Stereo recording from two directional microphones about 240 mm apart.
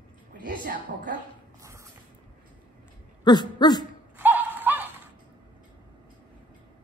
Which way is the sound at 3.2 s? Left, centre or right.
Centre.